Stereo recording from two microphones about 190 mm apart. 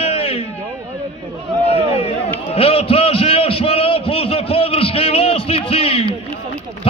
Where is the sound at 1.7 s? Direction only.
30° left (ahead or behind).